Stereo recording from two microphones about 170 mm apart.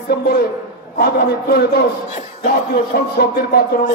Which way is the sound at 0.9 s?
70° left (ahead or behind).